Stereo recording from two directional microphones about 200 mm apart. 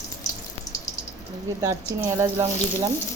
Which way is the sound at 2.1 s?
15° right (ahead or behind).